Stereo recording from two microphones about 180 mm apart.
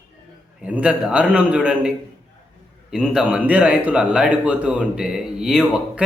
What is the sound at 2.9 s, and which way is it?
A man's voice, 5° right (ahead or behind).